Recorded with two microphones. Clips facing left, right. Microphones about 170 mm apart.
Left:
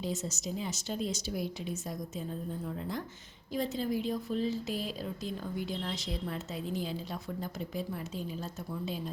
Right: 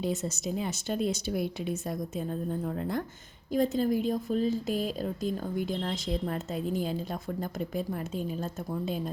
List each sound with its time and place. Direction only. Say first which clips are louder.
0.0 s a woman's voice: right 5 dB; 60° right (ahead or behind)